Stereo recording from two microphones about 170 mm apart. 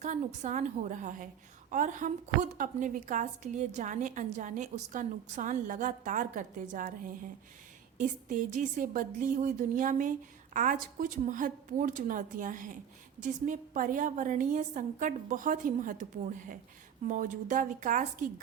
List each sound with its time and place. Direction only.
0.0 s a woman's voice: 45° right (ahead or behind)
7.9 s a woman's voice: 50° right (ahead or behind)